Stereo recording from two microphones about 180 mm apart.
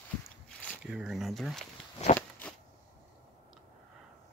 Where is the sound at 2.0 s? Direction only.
40° left (ahead or behind).